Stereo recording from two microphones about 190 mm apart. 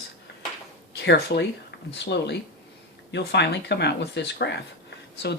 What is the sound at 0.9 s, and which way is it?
Speech, 60° left (ahead or behind).